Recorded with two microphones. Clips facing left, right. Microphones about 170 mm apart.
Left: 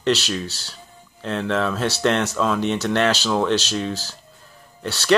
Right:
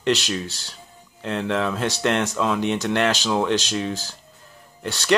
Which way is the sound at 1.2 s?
15° right (ahead or behind).